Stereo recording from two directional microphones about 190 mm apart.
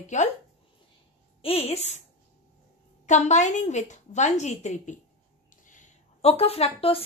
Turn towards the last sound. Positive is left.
turn(degrees=30)  # may be behind; listen again after turning